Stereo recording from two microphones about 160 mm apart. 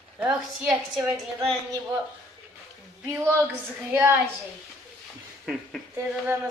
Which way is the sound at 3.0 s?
15° right (ahead or behind).